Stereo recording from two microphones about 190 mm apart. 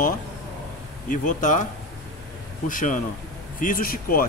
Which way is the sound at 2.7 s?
45° left (ahead or behind).